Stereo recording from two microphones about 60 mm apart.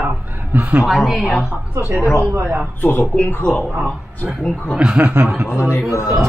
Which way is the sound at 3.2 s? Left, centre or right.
Left.